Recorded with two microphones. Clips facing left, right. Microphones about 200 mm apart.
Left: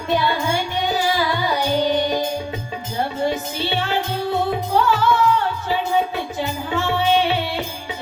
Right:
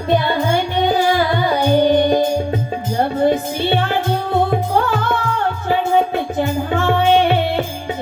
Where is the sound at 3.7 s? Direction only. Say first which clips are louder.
Right 5 dB; 55° right (ahead or behind).